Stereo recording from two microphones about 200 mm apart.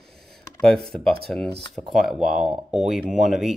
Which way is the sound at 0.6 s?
Centre (ahead or behind).